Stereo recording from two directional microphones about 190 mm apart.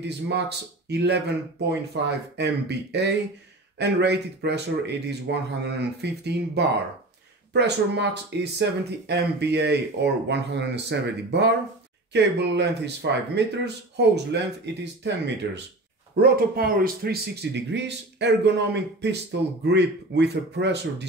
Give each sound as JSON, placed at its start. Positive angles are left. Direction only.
{"t": 0.3, "sound": "speech", "side_deg": -60}
{"t": 16.2, "sound": "speech", "side_deg": -50}